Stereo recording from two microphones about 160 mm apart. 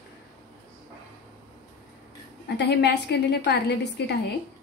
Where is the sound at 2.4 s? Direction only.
90° left.